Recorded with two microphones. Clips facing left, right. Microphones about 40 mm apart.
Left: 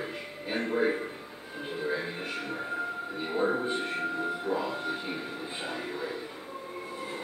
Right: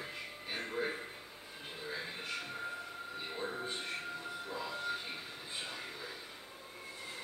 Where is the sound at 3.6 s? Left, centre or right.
Left.